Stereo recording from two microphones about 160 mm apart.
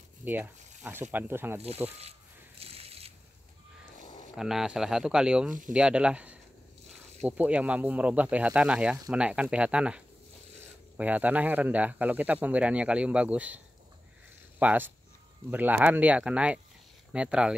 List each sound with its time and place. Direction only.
0.2 s speech: 10° right (ahead or behind)
2.6 s a sound: 40° right (ahead or behind)
4.4 s speech: centre (ahead or behind)
14.6 s speech: 10° right (ahead or behind)